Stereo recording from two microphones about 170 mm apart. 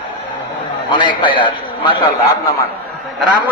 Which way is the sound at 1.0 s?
30° left (ahead or behind).